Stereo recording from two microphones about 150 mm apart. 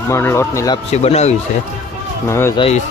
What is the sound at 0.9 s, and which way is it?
Speech, 45° left (ahead or behind).